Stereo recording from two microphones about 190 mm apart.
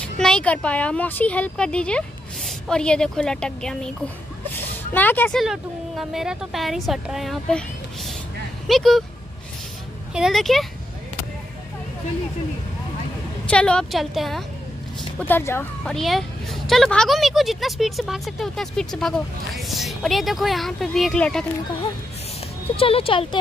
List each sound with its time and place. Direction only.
0.0 s a woman's voice: 5° left (ahead or behind)
10.1 s a woman's voice: centre (ahead or behind)
13.5 s a woman's voice: 5° left (ahead or behind)
15.1 s a woman's voice: 10° left (ahead or behind)
22.8 s speech: 30° left (ahead or behind)